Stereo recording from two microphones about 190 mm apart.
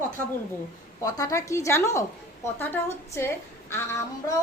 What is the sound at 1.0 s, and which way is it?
A woman's voice, 20° left (ahead or behind).